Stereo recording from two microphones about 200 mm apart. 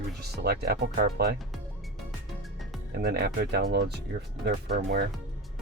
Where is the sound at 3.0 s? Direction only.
55° right (ahead or behind).